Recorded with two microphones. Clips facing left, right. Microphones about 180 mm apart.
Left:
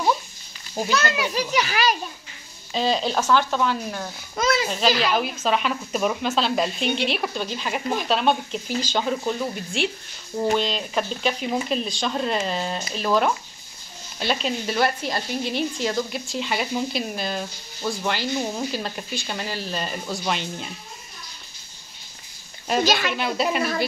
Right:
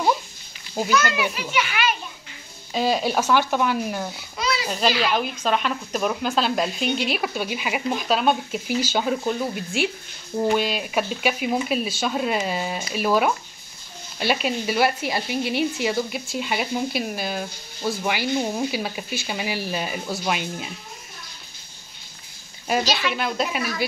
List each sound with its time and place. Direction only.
0.8 s a child's voice: 35° left (ahead or behind)
2.7 s speech: 5° right (ahead or behind)
4.4 s a sound: 45° left (ahead or behind)
4.6 s speech: 5° right (ahead or behind)
22.8 s speech: 50° left (ahead or behind)
23.1 s speech: centre (ahead or behind)